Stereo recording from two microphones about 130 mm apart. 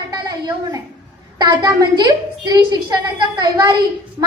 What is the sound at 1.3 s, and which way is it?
A woman's voice, 30° right (ahead or behind).